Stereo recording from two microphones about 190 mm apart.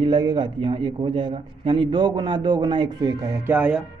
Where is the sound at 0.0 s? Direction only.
25° right (ahead or behind).